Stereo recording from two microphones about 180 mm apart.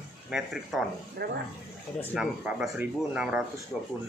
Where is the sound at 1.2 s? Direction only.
65° right (ahead or behind).